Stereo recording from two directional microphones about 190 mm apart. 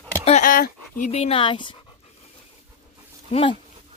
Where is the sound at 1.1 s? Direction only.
30° left (ahead or behind).